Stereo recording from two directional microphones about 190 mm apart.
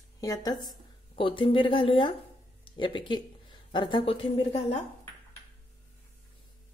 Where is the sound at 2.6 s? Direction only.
25° left (ahead or behind).